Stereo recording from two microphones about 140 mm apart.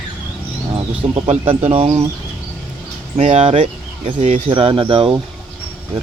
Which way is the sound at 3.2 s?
50° right (ahead or behind).